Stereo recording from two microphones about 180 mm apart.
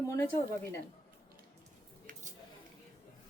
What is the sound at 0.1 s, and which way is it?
Speech, 15° left (ahead or behind).